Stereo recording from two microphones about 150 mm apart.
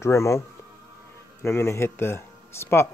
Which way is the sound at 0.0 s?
20° left (ahead or behind).